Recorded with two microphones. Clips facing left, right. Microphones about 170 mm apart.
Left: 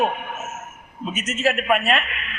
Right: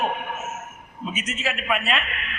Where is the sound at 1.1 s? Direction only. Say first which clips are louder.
Left 7 dB; 45° left (ahead or behind).